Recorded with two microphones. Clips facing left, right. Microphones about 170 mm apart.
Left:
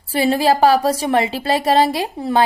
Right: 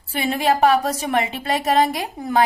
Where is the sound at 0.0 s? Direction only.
35° left (ahead or behind).